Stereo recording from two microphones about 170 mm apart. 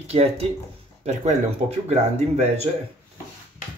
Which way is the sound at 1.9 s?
40° right (ahead or behind).